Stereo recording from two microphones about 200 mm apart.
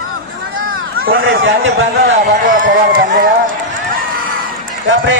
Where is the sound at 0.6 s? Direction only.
45° right (ahead or behind).